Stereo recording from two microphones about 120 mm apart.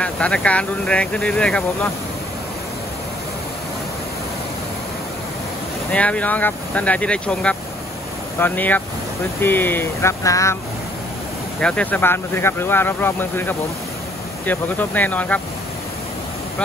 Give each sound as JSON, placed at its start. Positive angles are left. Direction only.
{"t": 0.0, "sound": "speech", "side_deg": 10}
{"t": 5.9, "sound": "speech", "side_deg": 10}
{"t": 11.6, "sound": "speech", "side_deg": 10}